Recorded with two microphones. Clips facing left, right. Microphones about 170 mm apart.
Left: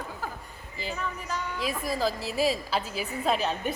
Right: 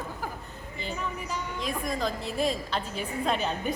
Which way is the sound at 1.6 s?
5° left (ahead or behind).